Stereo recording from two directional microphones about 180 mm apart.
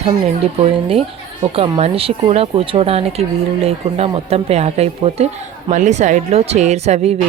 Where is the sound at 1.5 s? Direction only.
30° right (ahead or behind).